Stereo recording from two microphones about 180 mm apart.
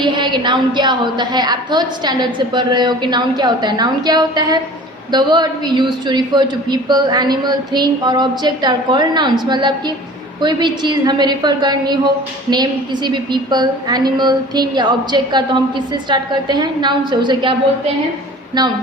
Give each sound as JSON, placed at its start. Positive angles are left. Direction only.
{"t": 0.0, "sound": "a woman's voice", "side_deg": -25}
{"t": 18.6, "sound": "a woman's voice", "side_deg": -25}